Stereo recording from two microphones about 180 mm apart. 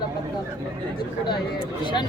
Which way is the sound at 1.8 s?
25° left (ahead or behind).